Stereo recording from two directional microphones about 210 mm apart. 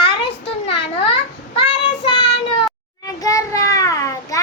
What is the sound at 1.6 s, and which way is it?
Child singing, 25° left (ahead or behind).